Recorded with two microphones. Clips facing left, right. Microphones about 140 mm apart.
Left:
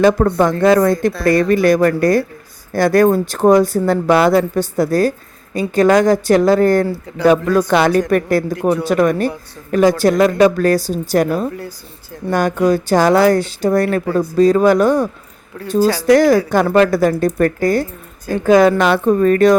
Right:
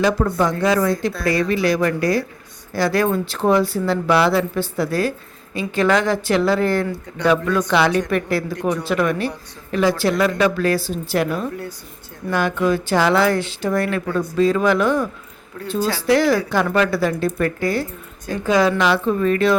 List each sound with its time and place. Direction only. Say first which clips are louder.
0.2 s speech: left 5 dB; 50° left (ahead or behind)